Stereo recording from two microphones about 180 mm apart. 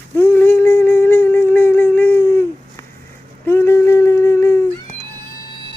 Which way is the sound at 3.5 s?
15° left (ahead or behind).